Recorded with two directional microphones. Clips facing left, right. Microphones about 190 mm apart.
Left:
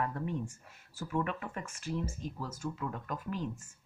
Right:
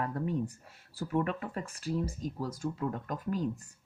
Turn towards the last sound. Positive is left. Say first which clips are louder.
# right 4 dB
turn(degrees=-40)  # may be behind; listen again after turning